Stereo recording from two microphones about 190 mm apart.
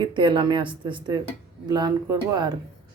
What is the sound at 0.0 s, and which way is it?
Speech, 25° right (ahead or behind).